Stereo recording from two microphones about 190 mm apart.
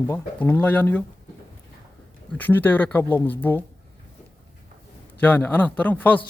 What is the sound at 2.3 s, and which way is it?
Speech, 10° left (ahead or behind).